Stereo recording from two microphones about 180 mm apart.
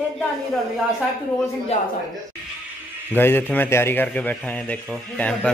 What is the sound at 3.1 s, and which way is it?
A man's voice, 10° left (ahead or behind).